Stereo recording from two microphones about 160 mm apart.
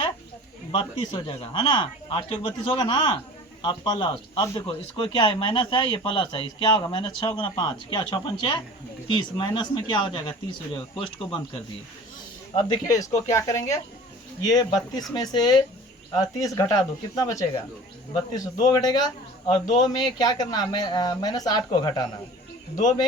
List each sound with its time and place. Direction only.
0.7 s speech: 30° left (ahead or behind)
15.1 s speech: 25° left (ahead or behind)